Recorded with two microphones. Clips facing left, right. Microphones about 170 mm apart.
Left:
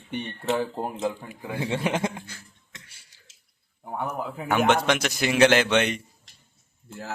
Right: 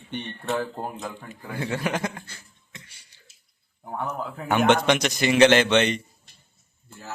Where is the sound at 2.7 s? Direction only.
5° left (ahead or behind).